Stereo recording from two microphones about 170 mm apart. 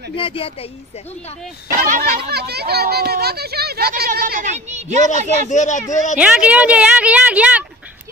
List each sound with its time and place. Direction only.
0.1 s speech: 30° left (ahead or behind)
1.8 s speech: 55° right (ahead or behind)
5.5 s speech: 45° left (ahead or behind)
6.1 s a woman's voice: 5° right (ahead or behind)